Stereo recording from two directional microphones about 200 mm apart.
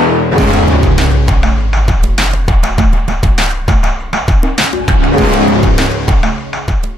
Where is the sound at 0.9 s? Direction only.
Centre (ahead or behind).